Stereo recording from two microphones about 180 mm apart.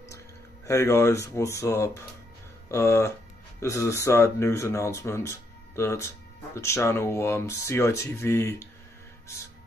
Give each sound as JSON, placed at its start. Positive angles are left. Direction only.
{"t": 0.7, "sound": "speech", "side_deg": 15}